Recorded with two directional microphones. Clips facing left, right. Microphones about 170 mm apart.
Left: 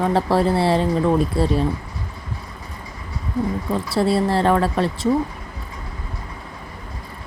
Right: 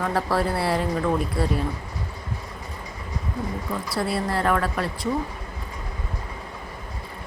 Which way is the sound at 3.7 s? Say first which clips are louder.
Left 7 dB; 25° left (ahead or behind).